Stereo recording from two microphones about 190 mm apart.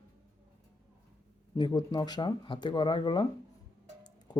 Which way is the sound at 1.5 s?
20° left (ahead or behind).